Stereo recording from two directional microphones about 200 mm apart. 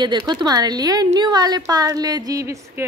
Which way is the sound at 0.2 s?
20° right (ahead or behind).